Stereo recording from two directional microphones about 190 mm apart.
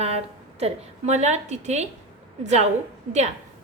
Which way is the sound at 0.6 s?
35° right (ahead or behind).